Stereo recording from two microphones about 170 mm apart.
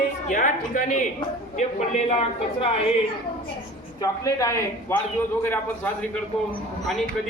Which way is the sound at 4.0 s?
20° left (ahead or behind).